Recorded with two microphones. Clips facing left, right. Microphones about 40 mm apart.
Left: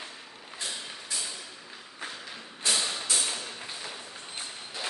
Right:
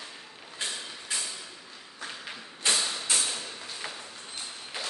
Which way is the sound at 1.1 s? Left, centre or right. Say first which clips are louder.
Right 2 dB; right.